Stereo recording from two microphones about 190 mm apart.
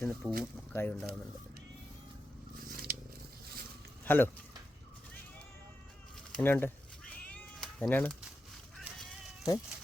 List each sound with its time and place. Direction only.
0.0 s speech: 5° left (ahead or behind)
2.6 s scissors: 50° right (ahead or behind)
4.0 s speech: 10° left (ahead or behind)
6.3 s cat: 10° left (ahead or behind)
8.8 s a sound: centre (ahead or behind)